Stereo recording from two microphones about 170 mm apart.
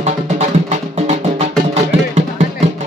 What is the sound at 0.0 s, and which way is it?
Music, 40° right (ahead or behind).